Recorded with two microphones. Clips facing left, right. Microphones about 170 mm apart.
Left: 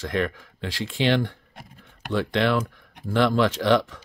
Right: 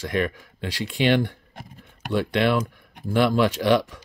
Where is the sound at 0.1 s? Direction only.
15° right (ahead or behind).